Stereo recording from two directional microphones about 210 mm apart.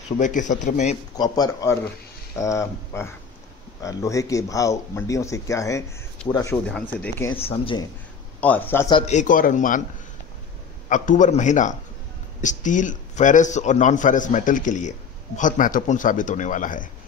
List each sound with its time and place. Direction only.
0.2 s a man's voice: 35° left (ahead or behind)
1.1 s speech: 20° left (ahead or behind)
7.3 s speech: 25° left (ahead or behind)
8.4 s speech: 10° left (ahead or behind)
8.9 s a man's voice: 35° left (ahead or behind)
10.9 s a man's voice: 35° left (ahead or behind)